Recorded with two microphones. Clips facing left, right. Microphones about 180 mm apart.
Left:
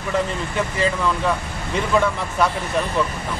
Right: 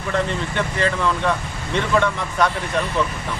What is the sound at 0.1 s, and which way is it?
Speech, 5° left (ahead or behind).